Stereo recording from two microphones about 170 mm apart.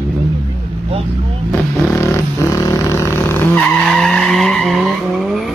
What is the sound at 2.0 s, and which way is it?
Vehicle, 20° left (ahead or behind).